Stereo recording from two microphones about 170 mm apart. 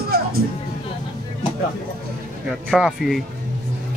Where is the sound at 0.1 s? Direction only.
65° right (ahead or behind).